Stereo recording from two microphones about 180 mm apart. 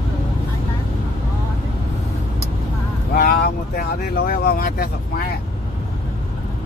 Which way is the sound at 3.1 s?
55° left (ahead or behind).